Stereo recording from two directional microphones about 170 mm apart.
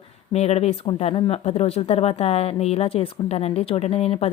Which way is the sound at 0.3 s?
40° left (ahead or behind).